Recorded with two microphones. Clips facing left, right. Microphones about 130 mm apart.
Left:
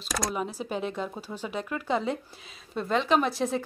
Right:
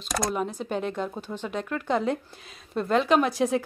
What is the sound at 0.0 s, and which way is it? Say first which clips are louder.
Speech: right 3 dB; centre (ahead or behind).